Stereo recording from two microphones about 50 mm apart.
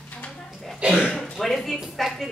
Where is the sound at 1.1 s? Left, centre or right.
Centre.